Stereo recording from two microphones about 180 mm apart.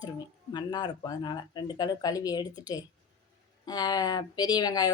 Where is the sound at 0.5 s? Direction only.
25° left (ahead or behind).